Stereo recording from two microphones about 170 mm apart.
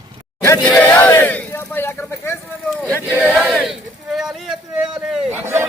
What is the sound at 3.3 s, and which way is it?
Battle cry, 10° right (ahead or behind).